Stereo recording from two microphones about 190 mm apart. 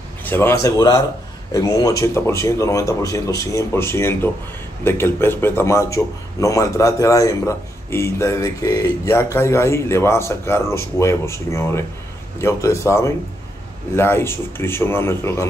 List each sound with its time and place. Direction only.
0.2 s a man's voice: 10° left (ahead or behind)